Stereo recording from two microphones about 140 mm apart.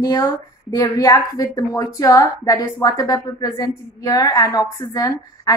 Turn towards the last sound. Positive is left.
turn(degrees=30)  # may be behind; listen again after turning